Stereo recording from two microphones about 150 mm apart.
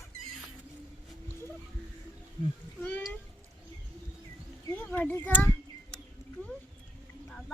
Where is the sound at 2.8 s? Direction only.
10° left (ahead or behind).